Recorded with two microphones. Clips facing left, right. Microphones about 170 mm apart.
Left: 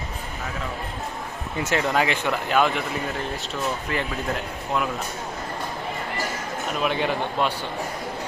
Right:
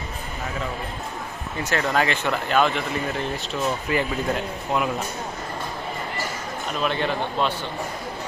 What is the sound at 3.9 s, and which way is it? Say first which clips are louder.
Speech: right 5 dB; 5° right (ahead or behind).